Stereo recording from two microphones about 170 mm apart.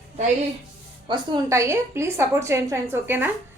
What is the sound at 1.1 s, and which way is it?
A woman's voice, 20° right (ahead or behind).